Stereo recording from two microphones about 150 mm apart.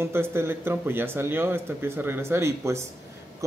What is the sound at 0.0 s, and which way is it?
Speech, 15° right (ahead or behind).